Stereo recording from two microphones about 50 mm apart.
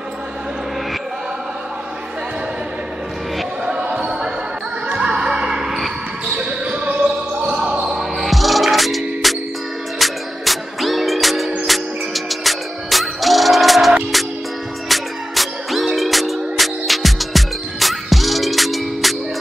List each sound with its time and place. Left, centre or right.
3.6 s basketball bounce: right
6.3 s basketball bounce: right
7.9 s music: centre